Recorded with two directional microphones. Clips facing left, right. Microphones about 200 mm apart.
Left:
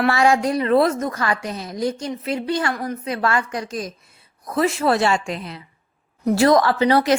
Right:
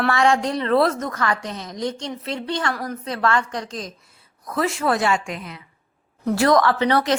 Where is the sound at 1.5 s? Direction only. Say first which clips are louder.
Left 3 dB; 10° left (ahead or behind).